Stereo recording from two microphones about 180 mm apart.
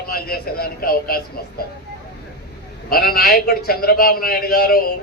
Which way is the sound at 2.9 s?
55° left (ahead or behind).